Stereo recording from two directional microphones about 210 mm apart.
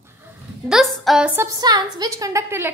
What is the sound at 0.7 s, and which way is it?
A woman's voice, centre (ahead or behind).